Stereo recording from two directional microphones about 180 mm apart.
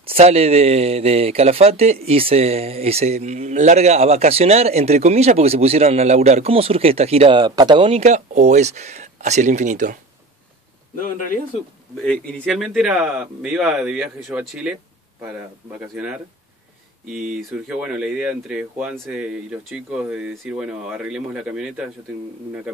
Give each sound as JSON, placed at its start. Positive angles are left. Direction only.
{"t": 0.0, "sound": "speech", "side_deg": -35}
{"t": 11.0, "sound": "speech", "side_deg": 50}
{"t": 12.0, "sound": "speech", "side_deg": 5}
{"t": 17.1, "sound": "speech", "side_deg": 0}